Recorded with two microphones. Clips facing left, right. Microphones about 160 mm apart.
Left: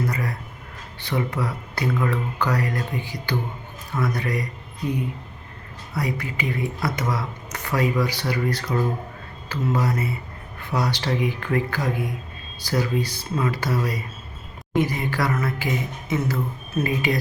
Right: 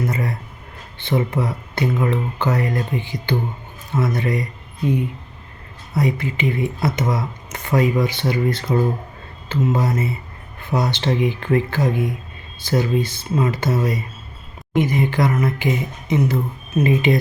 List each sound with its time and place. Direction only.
0.1 s a sound: 25° right (ahead or behind)
0.9 s speech: 25° right (ahead or behind)
5.9 s speech: 25° right (ahead or behind)